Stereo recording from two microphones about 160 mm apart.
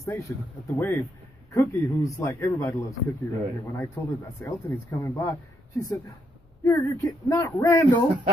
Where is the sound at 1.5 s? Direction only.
20° left (ahead or behind).